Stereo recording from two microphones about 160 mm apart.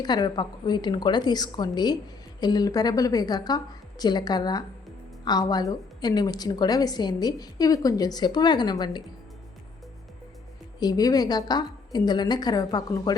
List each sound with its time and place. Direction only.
0.0 s a woman's voice: 25° left (ahead or behind)
10.8 s a woman's voice: 25° left (ahead or behind)